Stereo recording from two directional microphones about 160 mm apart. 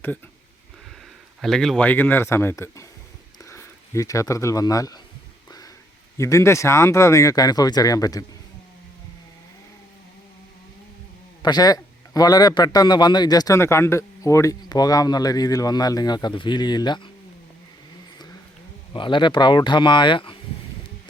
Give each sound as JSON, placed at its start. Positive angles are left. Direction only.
{"t": 1.4, "sound": "speech", "side_deg": 0}
{"t": 6.1, "sound": "a man's voice", "side_deg": 20}
{"t": 11.4, "sound": "a man's voice", "side_deg": 25}
{"t": 18.9, "sound": "a man's voice", "side_deg": 30}